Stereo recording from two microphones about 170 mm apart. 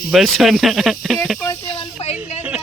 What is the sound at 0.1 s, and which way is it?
Speech, centre (ahead or behind).